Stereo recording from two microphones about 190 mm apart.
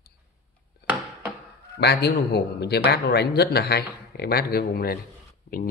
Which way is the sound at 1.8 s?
60° left (ahead or behind).